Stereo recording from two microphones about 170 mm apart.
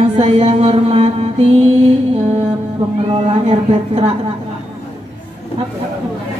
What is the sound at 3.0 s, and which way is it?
Mantra, 35° right (ahead or behind).